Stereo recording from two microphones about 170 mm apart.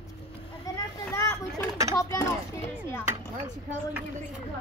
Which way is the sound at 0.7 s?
20° left (ahead or behind).